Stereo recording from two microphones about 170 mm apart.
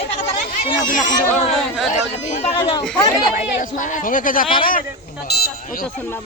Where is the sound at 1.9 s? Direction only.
40° left (ahead or behind).